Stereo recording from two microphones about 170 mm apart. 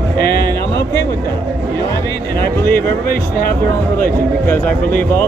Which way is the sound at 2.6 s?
60° left (ahead or behind).